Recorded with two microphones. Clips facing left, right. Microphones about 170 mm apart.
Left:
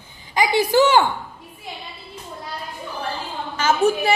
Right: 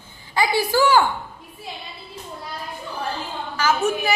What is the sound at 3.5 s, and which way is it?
Speech, 25° left (ahead or behind).